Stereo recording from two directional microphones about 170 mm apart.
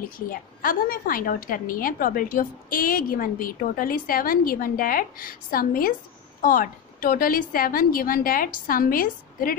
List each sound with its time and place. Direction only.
0.3 s a woman's voice: 55° left (ahead or behind)